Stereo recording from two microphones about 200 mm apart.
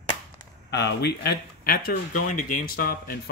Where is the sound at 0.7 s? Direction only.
55° left (ahead or behind).